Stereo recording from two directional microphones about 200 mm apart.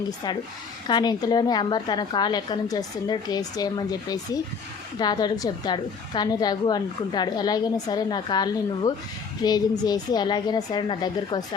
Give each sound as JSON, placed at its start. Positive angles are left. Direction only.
{"t": 0.9, "sound": "a woman's voice", "side_deg": 20}